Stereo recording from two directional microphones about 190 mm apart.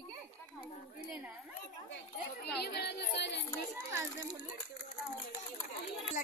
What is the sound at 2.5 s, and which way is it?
Speech, 55° left (ahead or behind).